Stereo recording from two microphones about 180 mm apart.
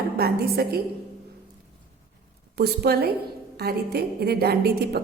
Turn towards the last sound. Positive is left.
turn(degrees=-60)  # may be behind; listen again after turning